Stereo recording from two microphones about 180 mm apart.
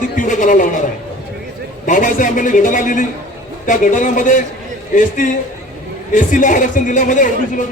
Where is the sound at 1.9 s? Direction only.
45° left (ahead or behind).